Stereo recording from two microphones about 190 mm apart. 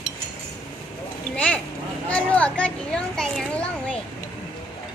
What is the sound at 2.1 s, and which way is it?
Children playing, 5° left (ahead or behind).